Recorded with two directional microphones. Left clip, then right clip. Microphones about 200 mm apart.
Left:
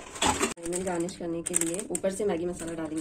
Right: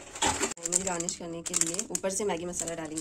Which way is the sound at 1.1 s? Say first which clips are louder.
Left 3 dB; 40° right (ahead or behind).